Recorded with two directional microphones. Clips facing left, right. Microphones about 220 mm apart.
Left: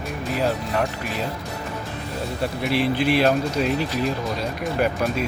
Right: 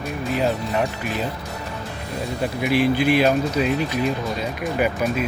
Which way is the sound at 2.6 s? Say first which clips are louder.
Right 3 dB; centre (ahead or behind).